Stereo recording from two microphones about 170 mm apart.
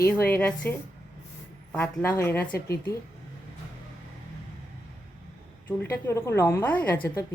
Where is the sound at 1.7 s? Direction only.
10° left (ahead or behind).